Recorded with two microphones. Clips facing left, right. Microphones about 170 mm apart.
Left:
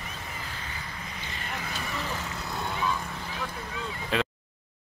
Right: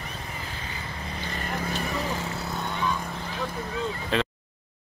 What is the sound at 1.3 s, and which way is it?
Vehicle, 40° right (ahead or behind).